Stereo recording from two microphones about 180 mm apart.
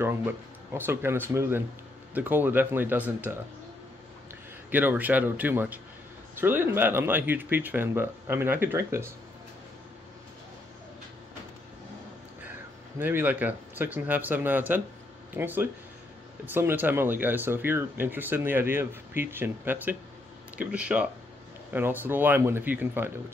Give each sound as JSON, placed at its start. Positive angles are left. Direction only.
{"t": 0.0, "sound": "speech", "side_deg": -15}
{"t": 4.6, "sound": "speech", "side_deg": -10}
{"t": 13.0, "sound": "speech", "side_deg": -10}